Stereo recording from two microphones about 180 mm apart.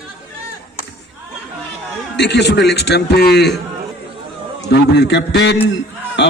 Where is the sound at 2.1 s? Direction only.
70° left (ahead or behind).